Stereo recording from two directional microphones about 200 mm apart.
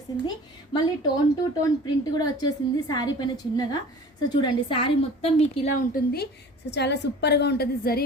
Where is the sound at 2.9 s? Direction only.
20° left (ahead or behind).